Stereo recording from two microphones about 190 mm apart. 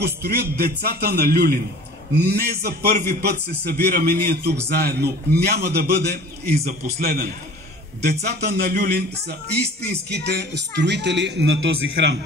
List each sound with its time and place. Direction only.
0.0 s a man's voice: 55° right (ahead or behind)
10.1 s a man's voice: 60° right (ahead or behind)